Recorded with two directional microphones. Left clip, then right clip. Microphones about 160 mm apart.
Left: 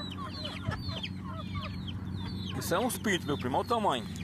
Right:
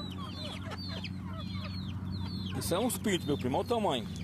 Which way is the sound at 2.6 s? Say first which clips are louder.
Left 2 dB; 5° right (ahead or behind).